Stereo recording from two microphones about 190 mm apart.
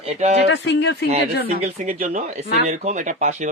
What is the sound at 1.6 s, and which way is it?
Speech, 35° right (ahead or behind).